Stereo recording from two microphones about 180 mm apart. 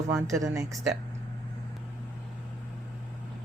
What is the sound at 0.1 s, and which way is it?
Speech, 20° right (ahead or behind).